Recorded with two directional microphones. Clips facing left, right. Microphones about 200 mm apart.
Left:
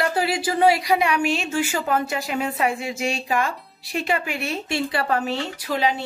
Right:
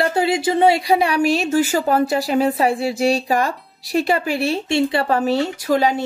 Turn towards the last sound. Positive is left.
turn(degrees=-45)  # may be behind; listen again after turning